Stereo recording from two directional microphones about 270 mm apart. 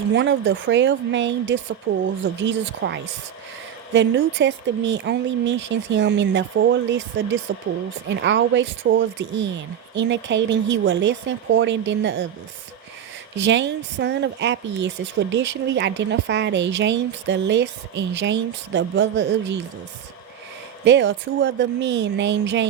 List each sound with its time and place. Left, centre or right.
0.1 s speech: right
13.3 s speech: right
20.8 s speech: right